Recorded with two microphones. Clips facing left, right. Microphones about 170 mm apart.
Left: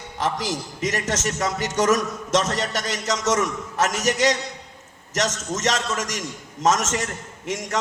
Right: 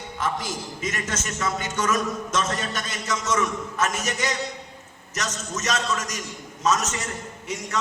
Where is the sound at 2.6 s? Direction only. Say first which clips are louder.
Left 4 dB; 80° left.